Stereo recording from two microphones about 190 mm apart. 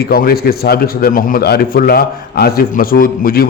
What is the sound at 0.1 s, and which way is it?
A man's voice, 50° left (ahead or behind).